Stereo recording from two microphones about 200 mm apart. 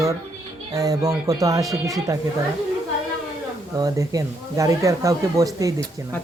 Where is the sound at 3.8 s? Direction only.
15° right (ahead or behind).